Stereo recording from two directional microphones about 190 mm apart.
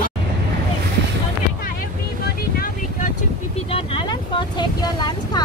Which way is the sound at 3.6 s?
25° left (ahead or behind).